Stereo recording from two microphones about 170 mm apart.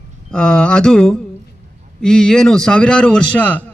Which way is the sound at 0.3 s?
5° left (ahead or behind).